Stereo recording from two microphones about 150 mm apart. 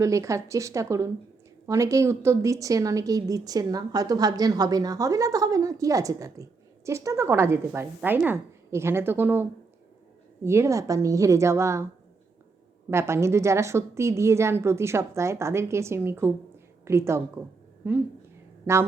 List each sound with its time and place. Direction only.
0.0 s a woman's voice: 20° right (ahead or behind)
12.9 s a woman's voice: 20° right (ahead or behind)